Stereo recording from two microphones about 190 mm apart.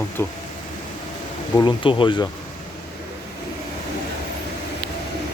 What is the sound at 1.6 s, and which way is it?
Speech, 25° left (ahead or behind).